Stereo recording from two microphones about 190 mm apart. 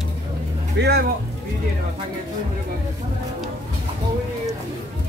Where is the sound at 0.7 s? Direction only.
55° right (ahead or behind).